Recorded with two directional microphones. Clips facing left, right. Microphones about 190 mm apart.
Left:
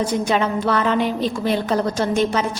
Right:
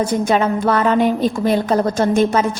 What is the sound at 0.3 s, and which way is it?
A woman's voice, 45° right (ahead or behind).